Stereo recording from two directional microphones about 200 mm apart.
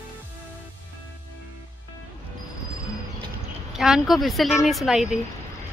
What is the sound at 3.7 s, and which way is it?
A woman's voice, centre (ahead or behind).